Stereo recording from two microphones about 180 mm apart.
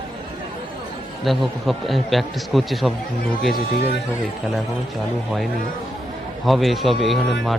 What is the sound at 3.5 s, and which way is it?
Speech, 60° left (ahead or behind).